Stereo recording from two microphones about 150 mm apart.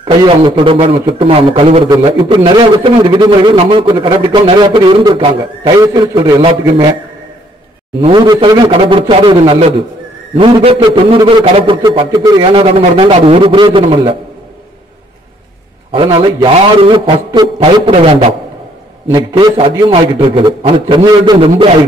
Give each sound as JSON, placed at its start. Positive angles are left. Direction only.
{"t": 0.0, "sound": "a man's voice", "side_deg": -30}
{"t": 8.0, "sound": "a man's voice", "side_deg": -30}
{"t": 15.9, "sound": "a man's voice", "side_deg": -35}